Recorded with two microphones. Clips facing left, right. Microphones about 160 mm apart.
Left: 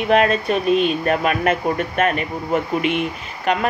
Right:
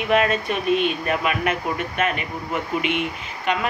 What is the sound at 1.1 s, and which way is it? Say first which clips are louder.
Speech: left 4 dB; 45° left (ahead or behind).